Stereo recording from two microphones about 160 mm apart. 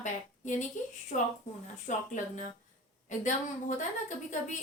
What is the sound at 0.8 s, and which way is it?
A woman's voice, 50° left (ahead or behind).